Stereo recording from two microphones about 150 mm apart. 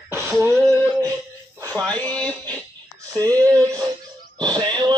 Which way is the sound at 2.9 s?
25° right (ahead or behind).